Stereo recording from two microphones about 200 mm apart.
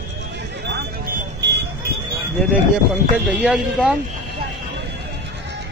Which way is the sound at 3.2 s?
Centre (ahead or behind).